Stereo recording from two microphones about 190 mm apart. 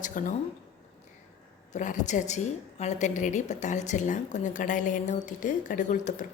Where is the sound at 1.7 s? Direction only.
40° left (ahead or behind).